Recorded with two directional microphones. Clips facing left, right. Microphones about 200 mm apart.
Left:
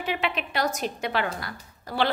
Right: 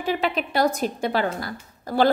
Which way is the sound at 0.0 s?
40° right (ahead or behind).